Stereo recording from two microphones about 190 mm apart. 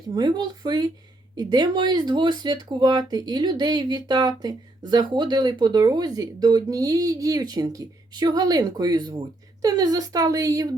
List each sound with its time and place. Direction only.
0.1 s speech: 25° right (ahead or behind)